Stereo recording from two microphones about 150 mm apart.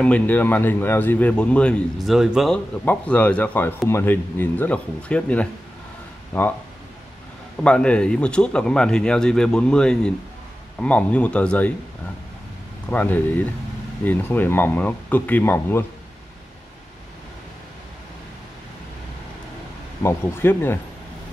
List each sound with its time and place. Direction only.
0.0 s a man's voice: 10° left (ahead or behind)
2.8 s a man's voice: 10° left (ahead or behind)
7.6 s a man's voice: 5° left (ahead or behind)
12.9 s a man's voice: 10° left (ahead or behind)
20.0 s a man's voice: 15° left (ahead or behind)